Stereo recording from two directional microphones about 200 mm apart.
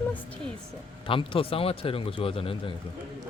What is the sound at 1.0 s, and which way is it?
A man's voice, 25° left (ahead or behind).